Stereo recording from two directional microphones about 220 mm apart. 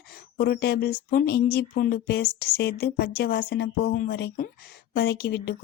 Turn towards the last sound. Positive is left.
turn(degrees=50)  # may be behind; listen again after turning